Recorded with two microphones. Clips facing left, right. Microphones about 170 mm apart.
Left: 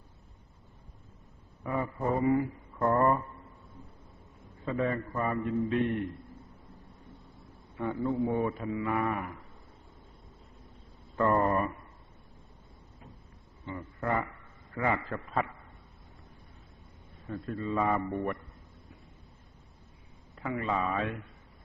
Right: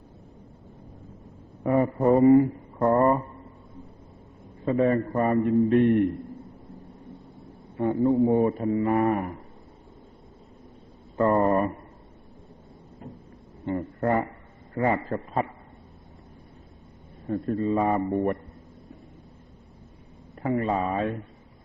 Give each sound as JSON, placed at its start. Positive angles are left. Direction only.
{"t": 1.6, "sound": "a man's voice", "side_deg": -55}
{"t": 2.7, "sound": "speech", "side_deg": -30}
{"t": 4.6, "sound": "a man's voice", "side_deg": -40}
{"t": 7.8, "sound": "a man's voice", "side_deg": -35}
{"t": 11.2, "sound": "speech", "side_deg": -30}
{"t": 13.7, "sound": "a man's voice", "side_deg": -45}
{"t": 17.2, "sound": "a man's voice", "side_deg": -40}
{"t": 20.4, "sound": "a man's voice", "side_deg": -40}